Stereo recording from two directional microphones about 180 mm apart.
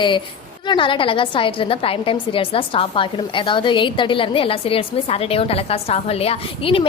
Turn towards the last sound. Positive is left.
turn(degrees=30)  # may be behind; listen again after turning